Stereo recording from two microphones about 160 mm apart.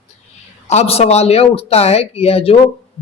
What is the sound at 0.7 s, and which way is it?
Speech, 40° left (ahead or behind).